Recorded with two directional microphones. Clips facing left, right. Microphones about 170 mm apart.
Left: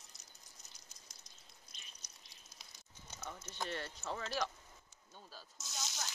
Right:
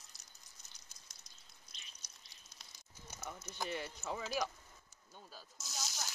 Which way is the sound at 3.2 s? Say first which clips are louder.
Even; 5° right (ahead or behind).